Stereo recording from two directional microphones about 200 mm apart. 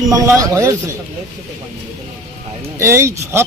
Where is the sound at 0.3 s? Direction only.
15° right (ahead or behind).